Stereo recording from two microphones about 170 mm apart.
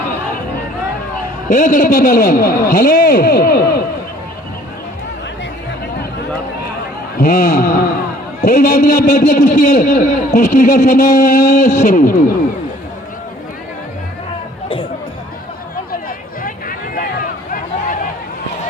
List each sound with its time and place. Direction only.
1.5 s a man's voice: 50° left (ahead or behind)
7.2 s a man's voice: 60° left (ahead or behind)
15.9 s a sound: 60° left (ahead or behind)